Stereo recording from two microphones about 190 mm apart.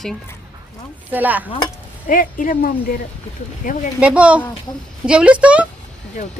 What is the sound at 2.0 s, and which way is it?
Speech, 45° left (ahead or behind).